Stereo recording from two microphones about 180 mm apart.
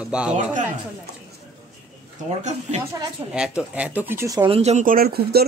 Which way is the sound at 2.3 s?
40° right (ahead or behind).